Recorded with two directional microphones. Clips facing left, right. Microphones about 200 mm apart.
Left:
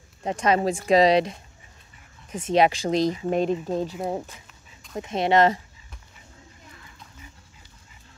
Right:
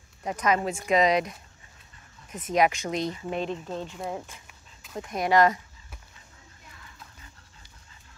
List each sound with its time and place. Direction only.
0.2 s speech: 30° left (ahead or behind)
3.3 s speech: 45° left (ahead or behind)
4.9 s speech: 25° left (ahead or behind)